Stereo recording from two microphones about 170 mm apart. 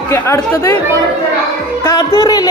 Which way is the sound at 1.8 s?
15° left (ahead or behind).